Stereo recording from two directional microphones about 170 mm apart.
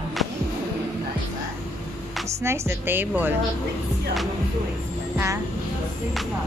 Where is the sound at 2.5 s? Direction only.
15° right (ahead or behind).